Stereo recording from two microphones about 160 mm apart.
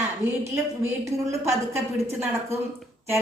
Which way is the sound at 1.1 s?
20° right (ahead or behind).